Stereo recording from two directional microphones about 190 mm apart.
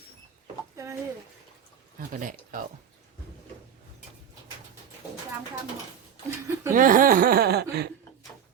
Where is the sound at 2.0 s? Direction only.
45° right (ahead or behind).